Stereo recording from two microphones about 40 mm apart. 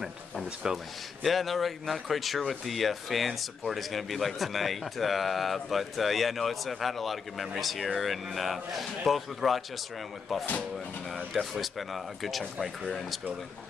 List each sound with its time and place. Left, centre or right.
0.6 s speech: centre
1.2 s speech: centre
11.3 s speech: centre